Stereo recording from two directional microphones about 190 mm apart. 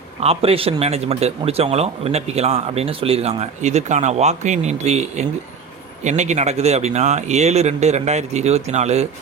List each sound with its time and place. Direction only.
0.2 s speech: 30° right (ahead or behind)